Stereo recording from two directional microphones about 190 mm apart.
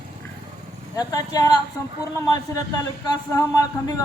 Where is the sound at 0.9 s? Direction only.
20° left (ahead or behind).